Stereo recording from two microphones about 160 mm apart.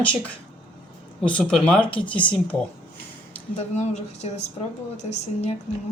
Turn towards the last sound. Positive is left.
turn(degrees=45)  # may be behind; listen again after turning